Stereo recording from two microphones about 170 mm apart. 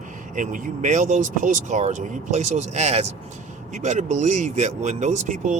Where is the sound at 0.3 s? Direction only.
50° right (ahead or behind).